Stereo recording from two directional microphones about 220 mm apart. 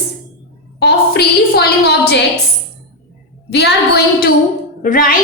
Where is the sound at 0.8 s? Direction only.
50° left (ahead or behind).